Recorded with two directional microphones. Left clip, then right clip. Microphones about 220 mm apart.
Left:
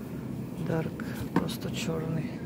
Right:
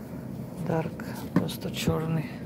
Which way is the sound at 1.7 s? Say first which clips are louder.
Right 5 dB; 20° right (ahead or behind).